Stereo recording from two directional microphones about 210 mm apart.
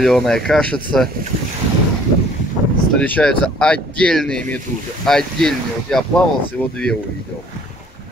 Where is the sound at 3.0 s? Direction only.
5° left (ahead or behind).